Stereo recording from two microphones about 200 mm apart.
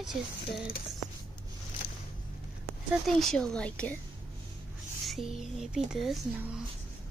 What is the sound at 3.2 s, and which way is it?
Speech, 5° left (ahead or behind).